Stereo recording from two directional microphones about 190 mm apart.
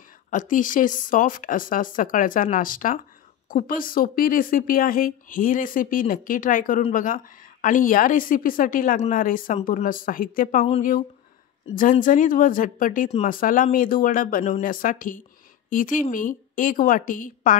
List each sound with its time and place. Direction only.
0.3 s speech: 45° left (ahead or behind)